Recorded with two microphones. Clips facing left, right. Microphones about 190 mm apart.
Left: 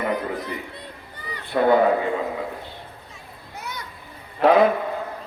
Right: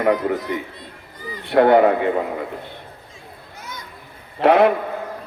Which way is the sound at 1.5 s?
70° right (ahead or behind).